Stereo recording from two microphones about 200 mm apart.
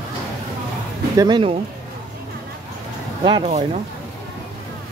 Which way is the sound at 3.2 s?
25° right (ahead or behind).